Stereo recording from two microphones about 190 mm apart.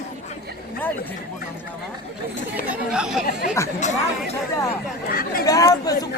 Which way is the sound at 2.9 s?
5° right (ahead or behind).